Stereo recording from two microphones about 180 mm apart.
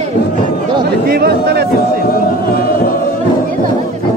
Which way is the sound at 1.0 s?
60° right (ahead or behind).